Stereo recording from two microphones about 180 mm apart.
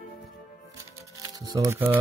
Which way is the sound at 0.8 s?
20° right (ahead or behind).